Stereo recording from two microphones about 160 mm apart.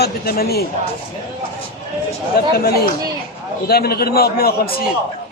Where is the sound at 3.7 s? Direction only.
75° left (ahead or behind).